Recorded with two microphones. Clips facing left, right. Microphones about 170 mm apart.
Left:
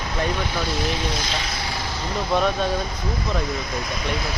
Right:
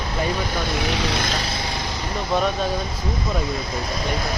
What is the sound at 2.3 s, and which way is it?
Speech, centre (ahead or behind).